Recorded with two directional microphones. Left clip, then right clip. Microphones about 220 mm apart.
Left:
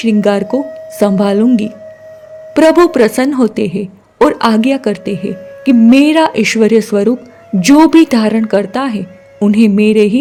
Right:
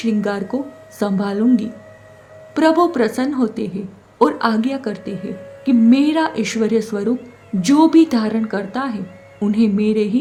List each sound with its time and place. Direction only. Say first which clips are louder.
0.0 s a woman's voice: left 9 dB; 40° left (ahead or behind)